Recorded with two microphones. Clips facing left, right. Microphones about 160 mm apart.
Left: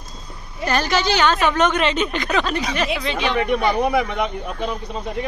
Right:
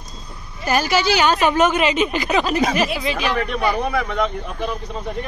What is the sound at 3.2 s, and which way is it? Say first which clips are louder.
Speech: left 2 dB; 25° left (ahead or behind).